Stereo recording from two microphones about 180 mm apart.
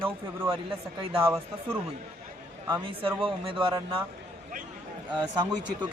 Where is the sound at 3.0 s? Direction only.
30° right (ahead or behind).